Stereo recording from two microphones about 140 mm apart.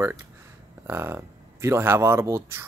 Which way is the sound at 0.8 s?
15° right (ahead or behind).